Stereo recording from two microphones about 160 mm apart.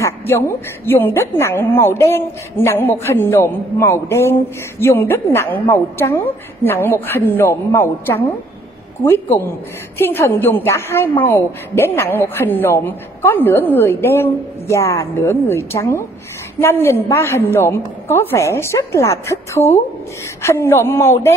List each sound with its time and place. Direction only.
0.0 s a woman's voice: 15° left (ahead or behind)